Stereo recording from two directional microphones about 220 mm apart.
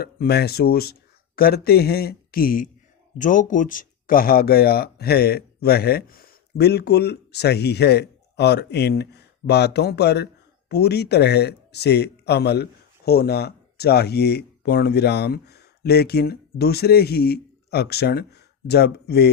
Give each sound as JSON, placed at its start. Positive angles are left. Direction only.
{"t": 0.0, "sound": "speech", "side_deg": 45}